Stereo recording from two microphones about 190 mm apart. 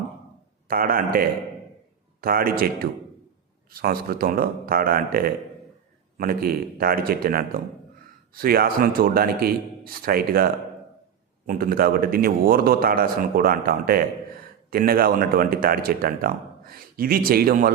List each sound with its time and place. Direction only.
0.7 s speech: 50° right (ahead or behind)
3.7 s speech: 50° right (ahead or behind)